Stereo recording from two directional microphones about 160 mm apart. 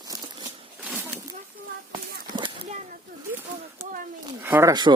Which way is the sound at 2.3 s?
30° right (ahead or behind).